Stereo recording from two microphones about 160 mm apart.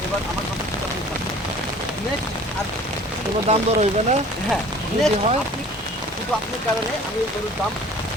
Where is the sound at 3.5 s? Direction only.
45° right (ahead or behind).